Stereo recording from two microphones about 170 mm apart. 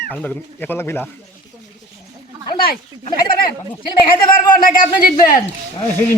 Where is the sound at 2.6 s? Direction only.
60° left (ahead or behind).